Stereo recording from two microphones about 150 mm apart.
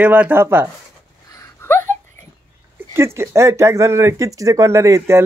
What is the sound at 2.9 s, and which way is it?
Speech, 15° right (ahead or behind).